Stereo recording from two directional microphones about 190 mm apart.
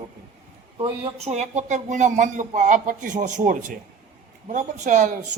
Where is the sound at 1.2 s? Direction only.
35° right (ahead or behind).